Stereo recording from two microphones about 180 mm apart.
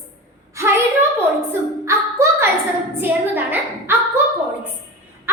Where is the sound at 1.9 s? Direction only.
15° right (ahead or behind).